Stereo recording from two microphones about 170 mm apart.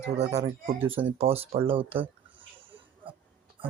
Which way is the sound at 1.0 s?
35° right (ahead or behind).